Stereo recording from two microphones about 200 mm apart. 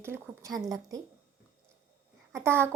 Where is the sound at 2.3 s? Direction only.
10° right (ahead or behind).